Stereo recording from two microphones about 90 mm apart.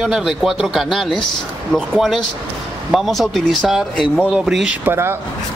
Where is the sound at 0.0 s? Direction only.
5° right (ahead or behind).